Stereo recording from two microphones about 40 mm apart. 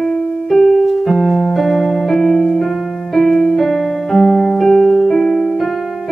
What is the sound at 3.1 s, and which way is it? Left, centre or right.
Piano, centre.